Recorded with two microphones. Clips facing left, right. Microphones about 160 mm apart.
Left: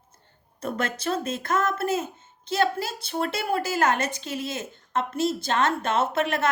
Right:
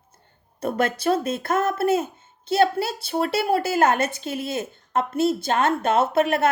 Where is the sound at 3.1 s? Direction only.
35° right (ahead or behind).